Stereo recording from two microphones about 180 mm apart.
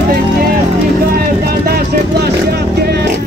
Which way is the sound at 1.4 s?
60° right (ahead or behind).